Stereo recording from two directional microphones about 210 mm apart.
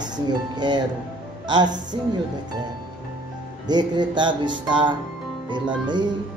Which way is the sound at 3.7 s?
20° right (ahead or behind).